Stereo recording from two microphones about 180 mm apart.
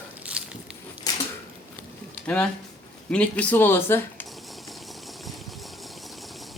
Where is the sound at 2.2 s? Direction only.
5° left (ahead or behind).